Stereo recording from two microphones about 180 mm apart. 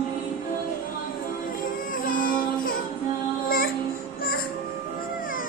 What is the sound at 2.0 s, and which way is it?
Music, 50° left (ahead or behind).